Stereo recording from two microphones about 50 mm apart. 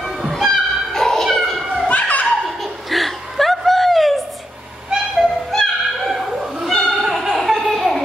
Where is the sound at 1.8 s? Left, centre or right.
Left.